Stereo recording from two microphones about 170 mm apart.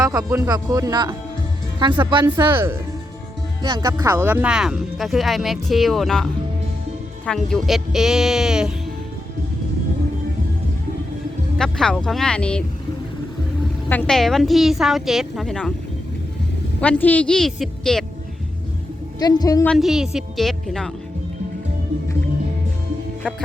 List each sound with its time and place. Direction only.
0.0 s speech: 20° right (ahead or behind)
3.6 s speech: 25° right (ahead or behind); by 6.2 s centre (ahead or behind)
7.3 s speech: centre (ahead or behind)
11.5 s speech: 5° left (ahead or behind)
13.9 s speech: 5° left (ahead or behind)
16.8 s speech: 10° left (ahead or behind)
19.2 s a woman's voice: 25° left (ahead or behind)
19.6 s speech: centre (ahead or behind)